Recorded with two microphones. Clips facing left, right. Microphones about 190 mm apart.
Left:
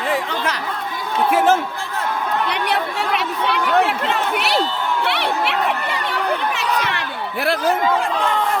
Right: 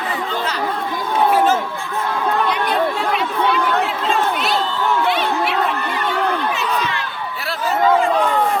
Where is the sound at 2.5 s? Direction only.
70° left (ahead or behind).